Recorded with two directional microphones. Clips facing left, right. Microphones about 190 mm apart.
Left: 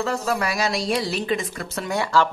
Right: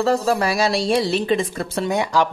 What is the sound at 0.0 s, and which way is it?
A woman's voice, 35° right (ahead or behind).